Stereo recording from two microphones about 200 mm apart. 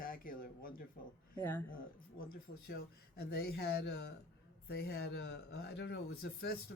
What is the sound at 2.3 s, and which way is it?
Speech, 50° left (ahead or behind).